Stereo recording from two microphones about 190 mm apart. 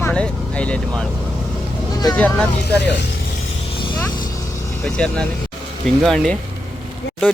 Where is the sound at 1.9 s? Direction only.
20° left (ahead or behind).